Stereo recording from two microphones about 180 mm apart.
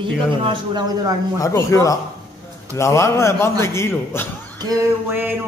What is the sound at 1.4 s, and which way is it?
A man's voice, 15° left (ahead or behind).